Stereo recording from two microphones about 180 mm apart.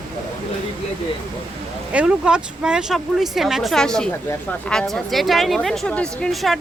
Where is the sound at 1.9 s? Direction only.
5° right (ahead or behind).